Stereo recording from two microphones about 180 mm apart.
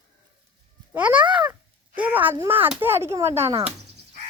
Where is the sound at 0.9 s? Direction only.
10° right (ahead or behind).